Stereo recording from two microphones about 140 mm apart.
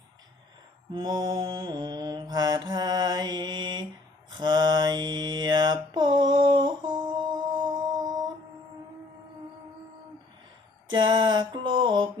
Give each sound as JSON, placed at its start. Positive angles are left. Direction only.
{"t": 0.9, "sound": "mantra", "side_deg": -30}
{"t": 7.7, "sound": "a sound", "side_deg": -30}
{"t": 10.9, "sound": "mantra", "side_deg": -35}